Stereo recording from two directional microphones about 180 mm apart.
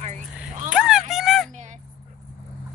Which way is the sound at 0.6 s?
5° right (ahead or behind).